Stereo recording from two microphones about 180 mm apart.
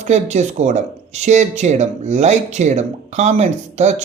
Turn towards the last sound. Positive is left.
turn(degrees=-40)  # may be behind; listen again after turning